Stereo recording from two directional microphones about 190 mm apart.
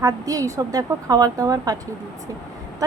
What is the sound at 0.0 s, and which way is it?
A woman's voice, 20° right (ahead or behind).